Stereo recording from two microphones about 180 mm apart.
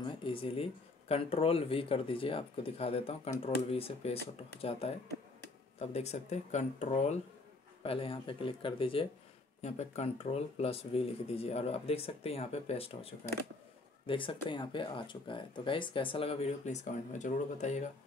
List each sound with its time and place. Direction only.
0.0 s speech: 30° left (ahead or behind)